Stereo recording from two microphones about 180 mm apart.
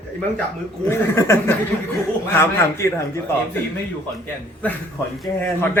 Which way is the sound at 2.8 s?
15° left (ahead or behind).